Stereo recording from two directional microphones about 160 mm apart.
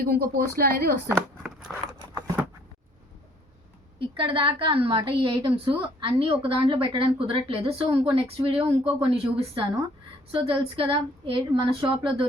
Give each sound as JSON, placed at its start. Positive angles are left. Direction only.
{"t": 0.2, "sound": "speech", "side_deg": -70}
{"t": 1.0, "sound": "a sound", "side_deg": -5}
{"t": 3.9, "sound": "a woman's voice", "side_deg": -35}